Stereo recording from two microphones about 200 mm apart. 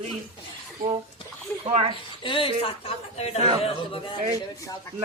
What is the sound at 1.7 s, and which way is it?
Speech, 30° right (ahead or behind).